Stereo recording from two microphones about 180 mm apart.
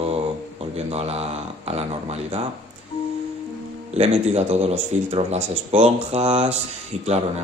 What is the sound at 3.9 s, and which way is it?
A man's voice, 35° right (ahead or behind).